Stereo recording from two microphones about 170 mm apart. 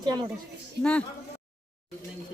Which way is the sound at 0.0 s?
25° right (ahead or behind).